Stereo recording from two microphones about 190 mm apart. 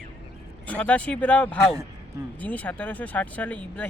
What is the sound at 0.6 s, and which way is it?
Speech, 5° left (ahead or behind).